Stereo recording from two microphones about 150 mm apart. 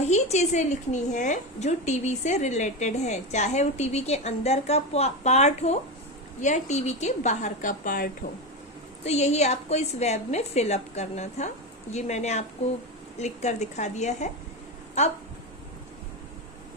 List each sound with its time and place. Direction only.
0.0 s a woman's voice: 45° left (ahead or behind); by 8.1 s 70° left (ahead or behind)
9.0 s a woman's voice: 45° left (ahead or behind)